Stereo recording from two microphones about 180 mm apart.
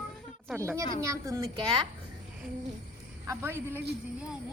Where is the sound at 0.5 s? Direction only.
15° right (ahead or behind).